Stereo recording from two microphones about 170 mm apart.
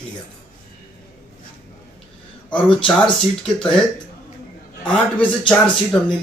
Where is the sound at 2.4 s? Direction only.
5° left (ahead or behind).